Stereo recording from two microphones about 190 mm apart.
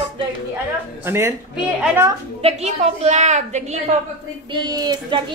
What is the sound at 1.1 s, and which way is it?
Speech, 15° right (ahead or behind).